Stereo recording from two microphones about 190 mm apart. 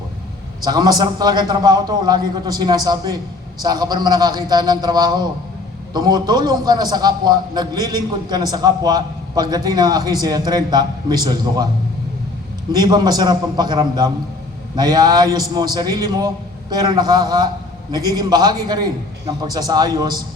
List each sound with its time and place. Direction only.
0.6 s a man's voice: 20° right (ahead or behind)
12.7 s a man's voice: 20° right (ahead or behind)